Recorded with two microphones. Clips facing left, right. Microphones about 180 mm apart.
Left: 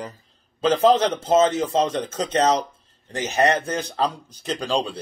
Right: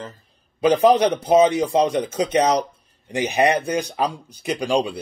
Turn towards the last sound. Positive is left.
turn(degrees=-10)  # may be behind; listen again after turning